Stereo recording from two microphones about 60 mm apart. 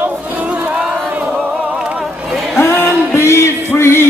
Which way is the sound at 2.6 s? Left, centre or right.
Left.